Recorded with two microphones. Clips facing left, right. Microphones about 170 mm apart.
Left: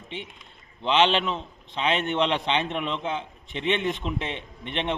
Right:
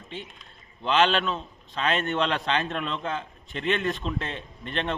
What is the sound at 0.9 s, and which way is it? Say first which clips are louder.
A man's voice: left 1 dB; 20° left (ahead or behind).